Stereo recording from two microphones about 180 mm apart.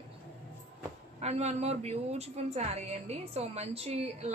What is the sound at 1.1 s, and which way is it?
A woman's voice, 35° right (ahead or behind).